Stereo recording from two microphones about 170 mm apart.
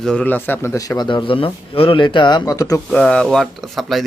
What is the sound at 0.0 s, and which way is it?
Speech, 5° left (ahead or behind).